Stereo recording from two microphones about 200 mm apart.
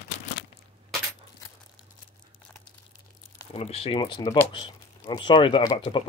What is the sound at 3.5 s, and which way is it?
Speech, 30° left (ahead or behind).